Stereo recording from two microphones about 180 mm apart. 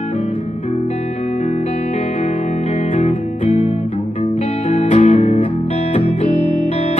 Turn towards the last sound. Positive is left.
turn(degrees=40)  # may be behind; listen again after turning